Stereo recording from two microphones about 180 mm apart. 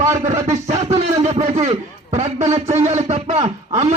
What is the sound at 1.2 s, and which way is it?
A man's voice, 35° right (ahead or behind).